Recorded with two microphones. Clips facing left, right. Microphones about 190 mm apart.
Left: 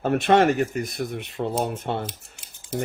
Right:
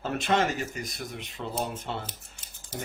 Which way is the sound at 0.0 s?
60° left (ahead or behind).